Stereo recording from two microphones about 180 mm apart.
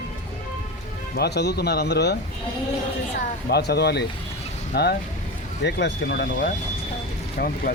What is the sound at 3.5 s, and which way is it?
Speech, 65° left (ahead or behind).